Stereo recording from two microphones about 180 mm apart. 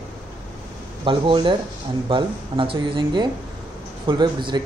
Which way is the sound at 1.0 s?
25° right (ahead or behind).